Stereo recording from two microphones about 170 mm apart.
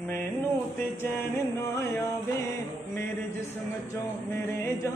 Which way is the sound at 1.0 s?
15° left (ahead or behind).